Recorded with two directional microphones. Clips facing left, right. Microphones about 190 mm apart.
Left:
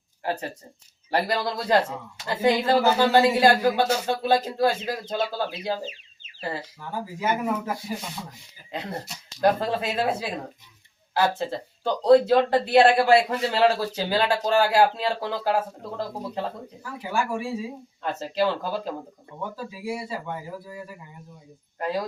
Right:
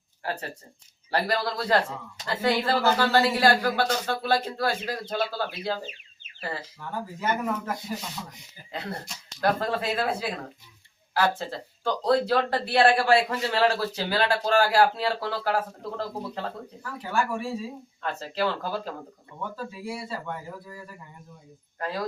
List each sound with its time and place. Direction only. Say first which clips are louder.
0.2 s speech: left 4 dB; 20° left (ahead or behind)
7.0 s speech: left 2 dB; 10° left (ahead or behind)
9.4 s speech: left 3 dB; 20° left (ahead or behind)